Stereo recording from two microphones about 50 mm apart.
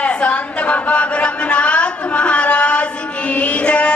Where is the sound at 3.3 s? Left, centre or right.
Left.